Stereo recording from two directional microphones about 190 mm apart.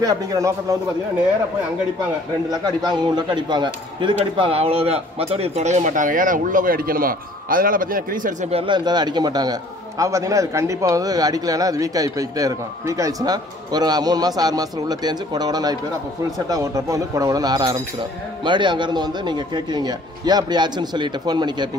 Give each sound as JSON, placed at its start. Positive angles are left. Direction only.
{"t": 0.0, "sound": "a man's voice", "side_deg": -20}
{"t": 2.6, "sound": "speech", "side_deg": -20}